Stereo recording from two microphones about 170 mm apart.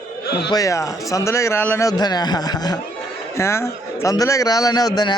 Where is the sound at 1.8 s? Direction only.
25° left (ahead or behind).